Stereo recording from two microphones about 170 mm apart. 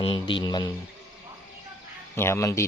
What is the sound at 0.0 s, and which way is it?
Speech, 30° left (ahead or behind).